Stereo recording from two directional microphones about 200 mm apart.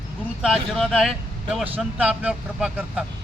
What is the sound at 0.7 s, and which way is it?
Speech, centre (ahead or behind).